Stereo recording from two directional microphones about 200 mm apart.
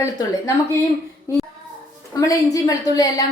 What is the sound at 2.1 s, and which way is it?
A woman's voice, 15° left (ahead or behind).